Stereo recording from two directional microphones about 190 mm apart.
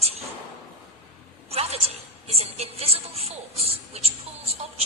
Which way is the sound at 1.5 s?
30° right (ahead or behind).